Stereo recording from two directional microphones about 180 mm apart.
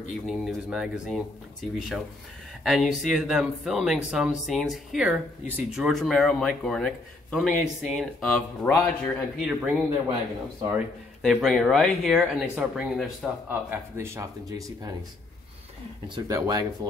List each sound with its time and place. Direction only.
0.1 s speech: centre (ahead or behind)
11.2 s speech: centre (ahead or behind)
13.9 s speech: 15° right (ahead or behind)
16.3 s speech: 20° right (ahead or behind)